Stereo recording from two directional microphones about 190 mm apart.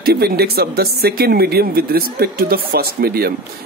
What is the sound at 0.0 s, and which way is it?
Speech, 55° right (ahead or behind).